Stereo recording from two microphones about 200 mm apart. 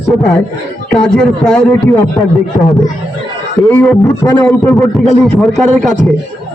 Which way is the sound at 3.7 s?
10° left (ahead or behind).